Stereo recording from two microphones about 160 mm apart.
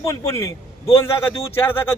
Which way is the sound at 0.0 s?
20° left (ahead or behind).